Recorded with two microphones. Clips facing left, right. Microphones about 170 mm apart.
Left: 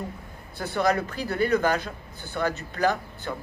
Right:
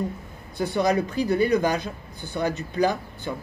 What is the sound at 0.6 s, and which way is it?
Speech, 15° right (ahead or behind).